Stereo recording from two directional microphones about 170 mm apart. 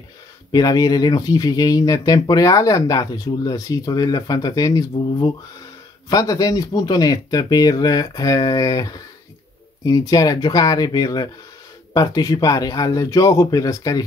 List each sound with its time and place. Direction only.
0.5 s speech: 20° left (ahead or behind)